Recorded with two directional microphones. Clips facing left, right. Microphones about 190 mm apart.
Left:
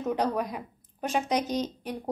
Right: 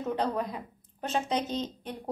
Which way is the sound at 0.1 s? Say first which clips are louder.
Left 2 dB; 15° left (ahead or behind).